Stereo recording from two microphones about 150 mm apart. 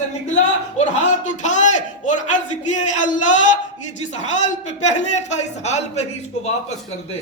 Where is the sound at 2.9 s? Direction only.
55° left (ahead or behind).